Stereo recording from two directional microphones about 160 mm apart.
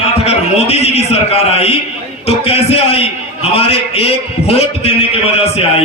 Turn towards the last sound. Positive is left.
turn(degrees=40)  # may be behind; listen again after turning